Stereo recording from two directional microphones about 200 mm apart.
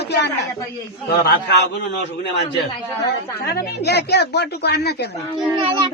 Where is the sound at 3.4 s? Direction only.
50° left (ahead or behind).